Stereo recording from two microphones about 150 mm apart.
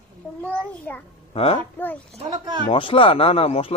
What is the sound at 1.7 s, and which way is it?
Speech, 10° left (ahead or behind).